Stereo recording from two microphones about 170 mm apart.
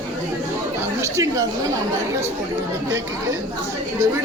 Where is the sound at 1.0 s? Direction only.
20° right (ahead or behind).